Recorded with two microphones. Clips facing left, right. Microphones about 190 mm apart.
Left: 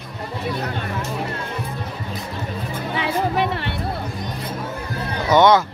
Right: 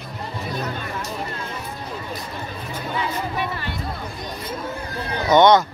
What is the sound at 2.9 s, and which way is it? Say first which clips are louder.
Music: left 5 dB; 80° left.